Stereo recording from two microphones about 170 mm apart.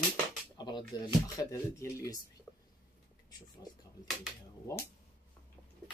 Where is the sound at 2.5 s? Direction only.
15° left (ahead or behind).